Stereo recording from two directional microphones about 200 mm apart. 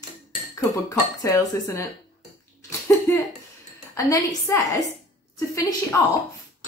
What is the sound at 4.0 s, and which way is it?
Speech, 15° left (ahead or behind).